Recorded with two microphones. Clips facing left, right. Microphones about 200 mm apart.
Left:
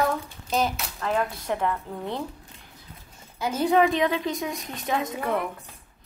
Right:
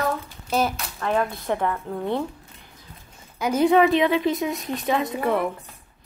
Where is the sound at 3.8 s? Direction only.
5° right (ahead or behind).